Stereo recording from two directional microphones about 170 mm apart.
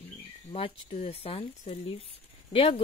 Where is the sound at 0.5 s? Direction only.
35° left (ahead or behind).